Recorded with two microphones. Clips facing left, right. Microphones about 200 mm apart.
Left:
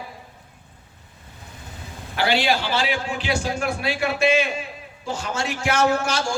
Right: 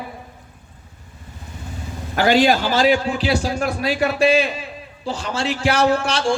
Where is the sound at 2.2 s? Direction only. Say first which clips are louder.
Right 6 dB; 45° right (ahead or behind).